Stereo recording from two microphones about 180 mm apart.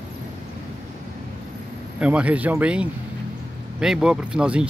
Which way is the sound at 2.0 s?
5° right (ahead or behind).